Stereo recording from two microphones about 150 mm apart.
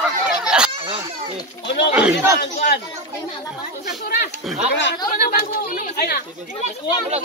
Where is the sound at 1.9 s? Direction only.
5° right (ahead or behind).